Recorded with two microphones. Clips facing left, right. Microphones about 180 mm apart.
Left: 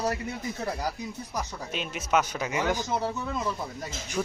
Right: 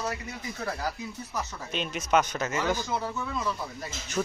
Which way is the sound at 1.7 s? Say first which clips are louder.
Right 1 dB; 5° left (ahead or behind).